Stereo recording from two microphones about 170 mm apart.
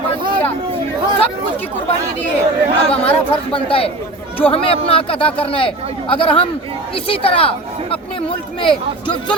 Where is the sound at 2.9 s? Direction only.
35° left (ahead or behind).